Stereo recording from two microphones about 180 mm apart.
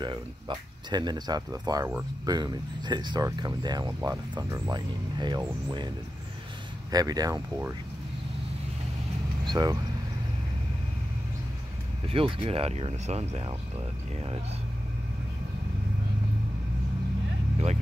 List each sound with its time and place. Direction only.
0.0 s speech: 25° right (ahead or behind)
6.9 s speech: 20° right (ahead or behind)
9.5 s speech: 25° right (ahead or behind)
12.1 s speech: 30° right (ahead or behind)